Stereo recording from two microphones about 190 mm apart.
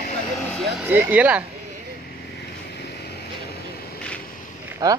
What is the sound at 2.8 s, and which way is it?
Vehicle, 55° left (ahead or behind).